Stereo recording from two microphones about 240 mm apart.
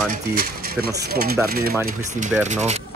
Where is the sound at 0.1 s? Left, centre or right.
Right.